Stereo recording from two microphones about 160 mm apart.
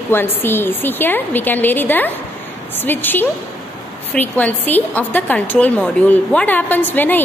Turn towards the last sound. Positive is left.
turn(degrees=10)  # may be behind; listen again after turning